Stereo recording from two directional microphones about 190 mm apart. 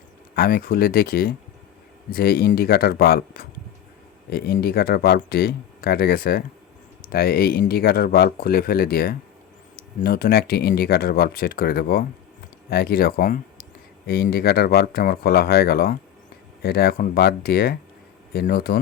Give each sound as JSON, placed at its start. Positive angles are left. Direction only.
{"t": 0.3, "sound": "speech", "side_deg": 50}